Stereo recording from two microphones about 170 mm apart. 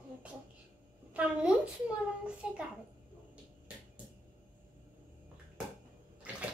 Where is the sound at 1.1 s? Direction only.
5° right (ahead or behind).